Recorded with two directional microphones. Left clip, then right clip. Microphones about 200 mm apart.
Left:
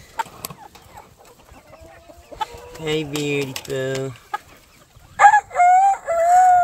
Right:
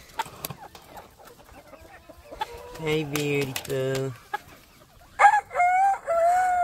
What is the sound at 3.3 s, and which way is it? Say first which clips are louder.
Typing: left 3 dB; 35° right (ahead or behind).